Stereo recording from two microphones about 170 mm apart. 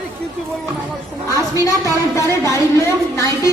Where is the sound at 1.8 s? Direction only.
20° left (ahead or behind).